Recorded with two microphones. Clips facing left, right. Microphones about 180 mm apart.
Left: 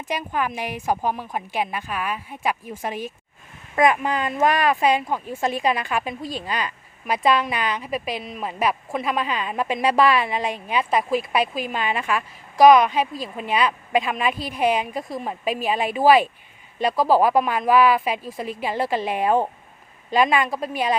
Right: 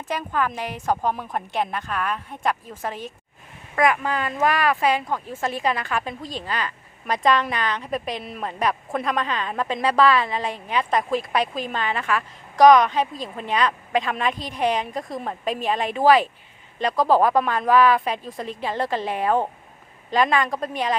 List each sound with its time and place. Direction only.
0.1 s a woman's voice: 15° left (ahead or behind)